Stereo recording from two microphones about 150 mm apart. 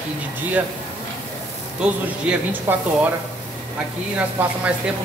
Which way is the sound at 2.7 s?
15° right (ahead or behind).